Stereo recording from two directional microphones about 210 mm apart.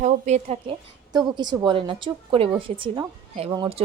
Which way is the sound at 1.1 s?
20° right (ahead or behind).